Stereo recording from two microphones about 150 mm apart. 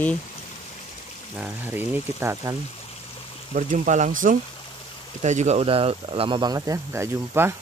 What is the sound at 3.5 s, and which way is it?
Speech, 55° right (ahead or behind).